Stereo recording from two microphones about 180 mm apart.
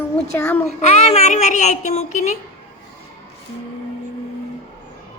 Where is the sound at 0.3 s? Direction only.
10° left (ahead or behind).